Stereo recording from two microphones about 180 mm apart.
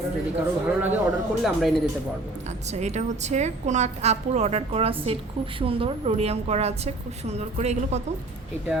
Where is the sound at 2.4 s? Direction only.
40° right (ahead or behind).